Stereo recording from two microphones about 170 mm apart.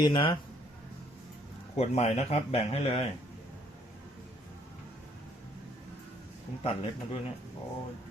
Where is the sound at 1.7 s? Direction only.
40° left (ahead or behind).